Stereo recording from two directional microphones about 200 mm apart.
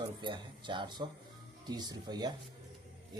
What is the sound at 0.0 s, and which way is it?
Speech, 25° right (ahead or behind).